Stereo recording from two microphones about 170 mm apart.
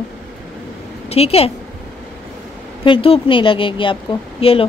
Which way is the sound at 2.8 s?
30° left (ahead or behind).